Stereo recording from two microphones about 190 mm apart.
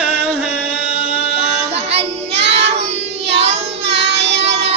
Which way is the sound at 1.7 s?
35° right (ahead or behind).